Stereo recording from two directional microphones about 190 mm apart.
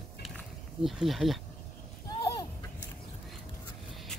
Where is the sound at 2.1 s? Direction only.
20° left (ahead or behind).